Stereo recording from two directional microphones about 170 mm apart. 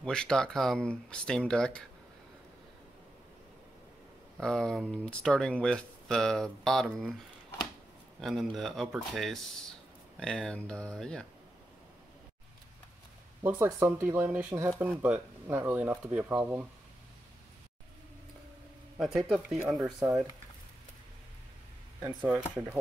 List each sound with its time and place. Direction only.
0.0 s speech: 5° left (ahead or behind)
4.4 s speech: 5° left (ahead or behind)
8.2 s speech: centre (ahead or behind)
13.4 s speech: 10° right (ahead or behind)
18.9 s speech: centre (ahead or behind)
19.8 s speech: 20° right (ahead or behind)